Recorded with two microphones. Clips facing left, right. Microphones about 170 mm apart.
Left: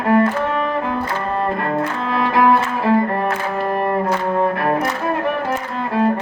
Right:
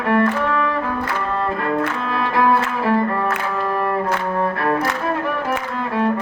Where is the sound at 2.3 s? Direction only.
20° left (ahead or behind).